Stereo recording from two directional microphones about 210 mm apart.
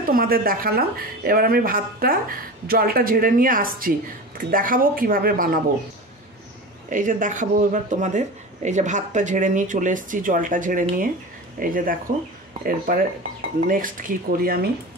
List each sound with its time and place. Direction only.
0.1 s speech: 45° right (ahead or behind)
6.9 s speech: 40° right (ahead or behind)